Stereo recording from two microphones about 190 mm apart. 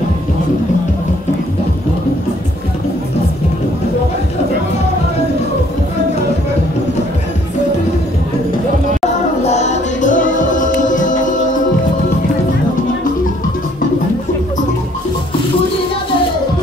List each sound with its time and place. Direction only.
9.4 s music: 35° left (ahead or behind)